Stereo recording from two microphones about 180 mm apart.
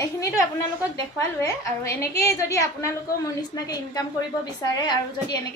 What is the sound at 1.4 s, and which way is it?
A woman's voice, 15° left (ahead or behind).